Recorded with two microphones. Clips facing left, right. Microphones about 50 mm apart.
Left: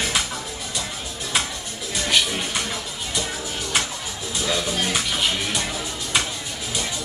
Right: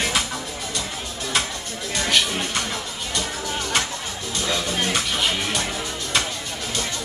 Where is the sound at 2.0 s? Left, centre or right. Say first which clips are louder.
Even; centre.